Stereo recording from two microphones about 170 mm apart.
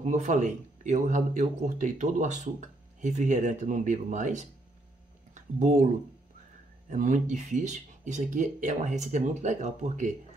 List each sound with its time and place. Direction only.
0.0 s speech: 45° right (ahead or behind)
6.9 s speech: 45° right (ahead or behind)